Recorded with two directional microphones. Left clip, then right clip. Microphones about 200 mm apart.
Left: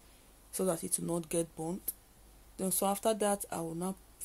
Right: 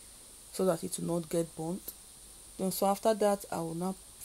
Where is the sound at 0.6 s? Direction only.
15° right (ahead or behind).